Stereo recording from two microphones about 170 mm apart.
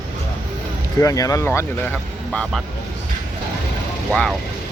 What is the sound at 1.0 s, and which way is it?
Speech, 20° left (ahead or behind).